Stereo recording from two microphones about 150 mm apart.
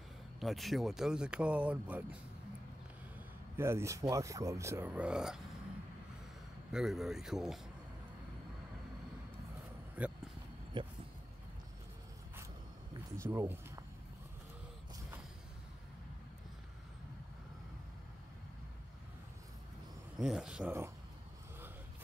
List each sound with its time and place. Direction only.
0.4 s speech: centre (ahead or behind)
3.5 s speech: 15° right (ahead or behind)
6.7 s speech: 5° right (ahead or behind)
9.9 s vehicle: 10° right (ahead or behind)
10.8 s speech: 30° right (ahead or behind)
13.2 s speech: 15° right (ahead or behind)
20.2 s speech: 5° right (ahead or behind)